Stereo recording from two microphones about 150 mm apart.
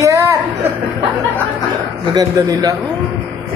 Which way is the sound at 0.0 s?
20° right (ahead or behind).